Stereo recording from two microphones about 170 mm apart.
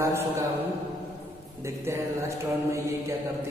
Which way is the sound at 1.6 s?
15° right (ahead or behind).